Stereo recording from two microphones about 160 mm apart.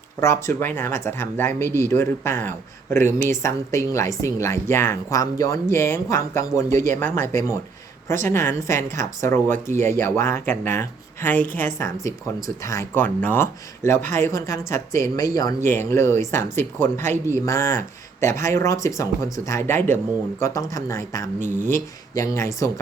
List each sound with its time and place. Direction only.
0.2 s a woman's voice: 15° left (ahead or behind)